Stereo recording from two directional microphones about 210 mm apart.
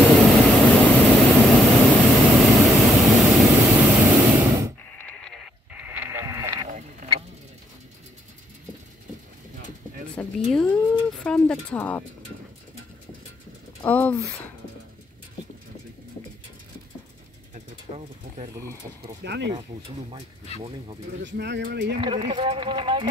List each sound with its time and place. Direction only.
0.1 s vehicle: centre (ahead or behind)
4.1 s a sound: 15° right (ahead or behind)
4.9 s radio: 5° left (ahead or behind); by 6.7 s 15° right (ahead or behind)
10.2 s a sound: 5° left (ahead or behind)
13.8 s speech: 5° left (ahead or behind)
19.2 s speech: 55° right (ahead or behind)
20.1 s speech: 30° right (ahead or behind)
21.2 s speech: 55° right (ahead or behind)
22.0 s speech: 25° right (ahead or behind)